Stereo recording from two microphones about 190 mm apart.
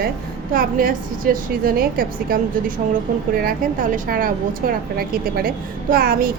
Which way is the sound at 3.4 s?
45° right (ahead or behind).